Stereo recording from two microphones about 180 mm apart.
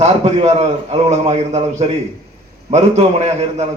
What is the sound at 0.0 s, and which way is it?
A man's voice, 35° right (ahead or behind).